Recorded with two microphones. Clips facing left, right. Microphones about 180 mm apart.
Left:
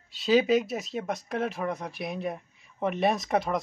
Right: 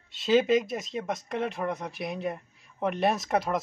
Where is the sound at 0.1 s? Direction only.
Centre (ahead or behind).